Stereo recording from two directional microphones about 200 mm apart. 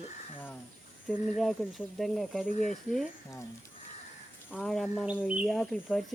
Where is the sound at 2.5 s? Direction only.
40° left (ahead or behind).